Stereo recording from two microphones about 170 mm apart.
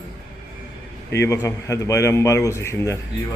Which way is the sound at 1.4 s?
20° left (ahead or behind).